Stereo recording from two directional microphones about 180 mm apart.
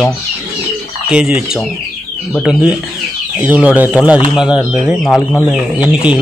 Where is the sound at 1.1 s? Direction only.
5° right (ahead or behind).